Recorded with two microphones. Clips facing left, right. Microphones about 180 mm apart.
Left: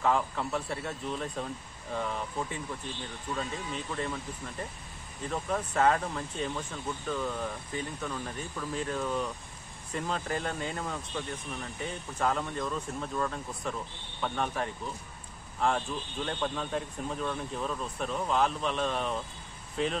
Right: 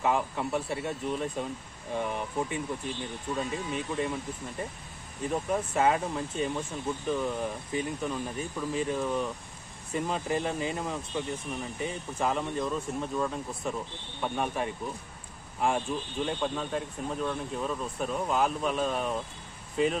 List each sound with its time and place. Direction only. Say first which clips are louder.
0.0 s speech: even; 10° right (ahead or behind)
5.3 s speech: right 2 dB; 10° right (ahead or behind)
16.3 s speech: even; 5° right (ahead or behind)